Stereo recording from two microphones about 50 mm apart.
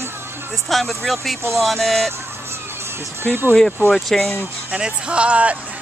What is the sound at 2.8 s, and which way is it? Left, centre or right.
Speech, right.